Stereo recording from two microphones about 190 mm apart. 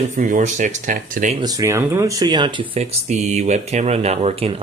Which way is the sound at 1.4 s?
15° right (ahead or behind).